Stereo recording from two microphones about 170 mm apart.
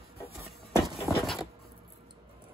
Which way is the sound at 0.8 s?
20° right (ahead or behind).